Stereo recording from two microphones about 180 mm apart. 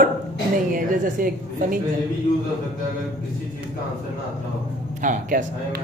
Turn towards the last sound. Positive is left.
turn(degrees=-45)  # may be behind; listen again after turning